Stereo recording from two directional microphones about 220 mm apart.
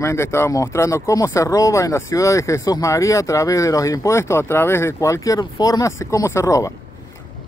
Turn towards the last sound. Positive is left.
turn(degrees=15)  # may be behind; listen again after turning